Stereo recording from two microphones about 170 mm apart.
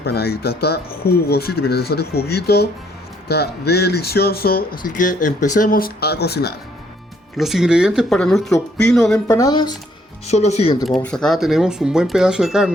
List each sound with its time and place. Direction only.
0.0 s speech: 65° left (ahead or behind)
7.3 s speech: centre (ahead or behind)
9.2 s speech: 20° left (ahead or behind)
10.2 s speech: 40° left (ahead or behind)
10.8 s speech: centre (ahead or behind)